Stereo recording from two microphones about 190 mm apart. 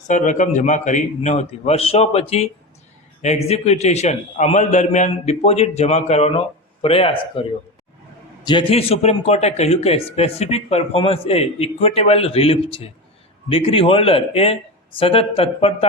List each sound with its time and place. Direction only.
0.1 s a man's voice: 40° left (ahead or behind)
8.4 s a man's voice: 30° left (ahead or behind)